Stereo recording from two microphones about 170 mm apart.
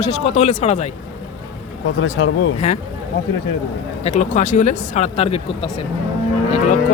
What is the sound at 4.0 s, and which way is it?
Speech, 45° left (ahead or behind).